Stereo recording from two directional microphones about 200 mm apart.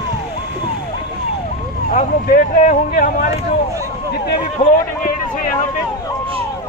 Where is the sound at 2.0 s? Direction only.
40° left (ahead or behind).